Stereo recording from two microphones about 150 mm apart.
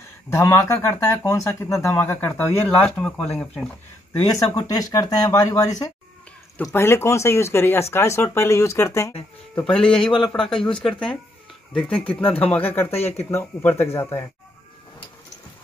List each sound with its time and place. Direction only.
0.3 s speech: 20° left (ahead or behind)
4.6 s speech: 25° left (ahead or behind)
9.8 s speech: 5° left (ahead or behind)
12.9 s speech: 45° left (ahead or behind)
13.2 s speech: 15° left (ahead or behind)